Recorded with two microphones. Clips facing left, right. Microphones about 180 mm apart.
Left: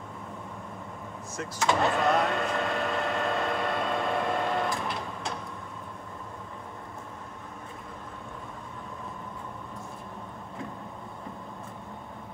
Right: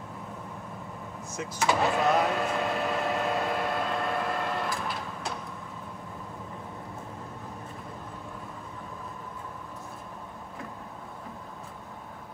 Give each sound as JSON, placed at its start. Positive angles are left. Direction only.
{"t": 1.3, "sound": "power windows", "side_deg": 0}